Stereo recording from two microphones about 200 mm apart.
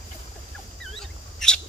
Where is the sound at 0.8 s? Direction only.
Centre (ahead or behind).